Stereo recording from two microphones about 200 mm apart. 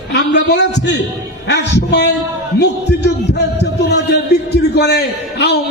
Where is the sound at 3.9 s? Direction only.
60° left (ahead or behind).